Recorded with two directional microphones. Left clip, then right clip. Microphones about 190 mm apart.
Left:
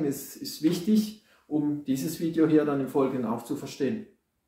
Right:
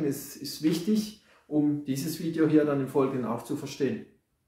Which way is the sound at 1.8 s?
15° right (ahead or behind).